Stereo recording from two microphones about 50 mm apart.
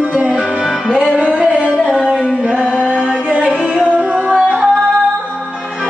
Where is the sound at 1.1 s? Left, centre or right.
Right.